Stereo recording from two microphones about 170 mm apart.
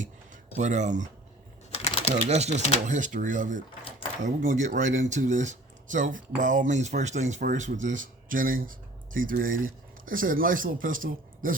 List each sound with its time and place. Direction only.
0.5 s speech: 45° right (ahead or behind)
2.0 s speech: 40° right (ahead or behind)